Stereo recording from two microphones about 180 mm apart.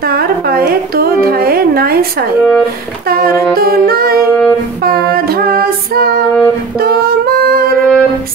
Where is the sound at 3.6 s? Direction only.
55° right (ahead or behind).